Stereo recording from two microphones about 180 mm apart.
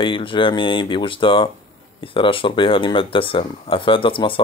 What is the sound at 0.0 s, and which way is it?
Speech, 30° left (ahead or behind).